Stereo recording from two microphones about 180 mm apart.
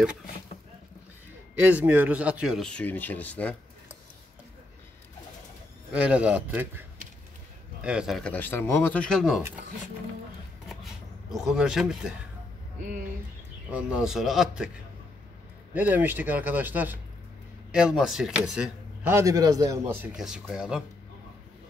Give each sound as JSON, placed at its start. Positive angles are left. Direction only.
{"t": 1.6, "sound": "speech", "side_deg": -10}
{"t": 5.9, "sound": "speech", "side_deg": -5}
{"t": 10.7, "sound": "a sound", "side_deg": 0}
{"t": 13.7, "sound": "speech", "side_deg": -5}
{"t": 15.7, "sound": "speech", "side_deg": -10}
{"t": 19.1, "sound": "speech", "side_deg": -20}
{"t": 20.2, "sound": "speech", "side_deg": 0}